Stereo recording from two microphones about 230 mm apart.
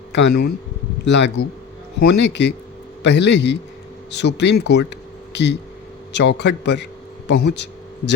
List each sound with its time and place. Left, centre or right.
0.1 s a man's voice: left